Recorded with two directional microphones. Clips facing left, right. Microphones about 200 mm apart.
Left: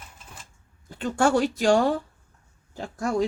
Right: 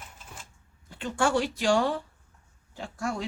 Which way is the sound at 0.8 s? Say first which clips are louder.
Left 5 dB; 45° left (ahead or behind).